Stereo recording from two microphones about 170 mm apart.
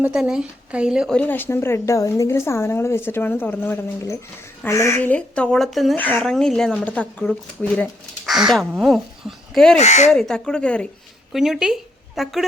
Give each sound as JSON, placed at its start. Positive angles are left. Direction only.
{"t": 0.0, "sound": "speech", "side_deg": -5}
{"t": 1.2, "sound": "a woman's voice", "side_deg": 10}
{"t": 9.7, "sound": "speech", "side_deg": 40}
{"t": 10.1, "sound": "speech", "side_deg": 5}